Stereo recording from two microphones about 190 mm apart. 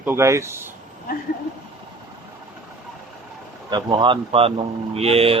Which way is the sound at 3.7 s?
25° right (ahead or behind).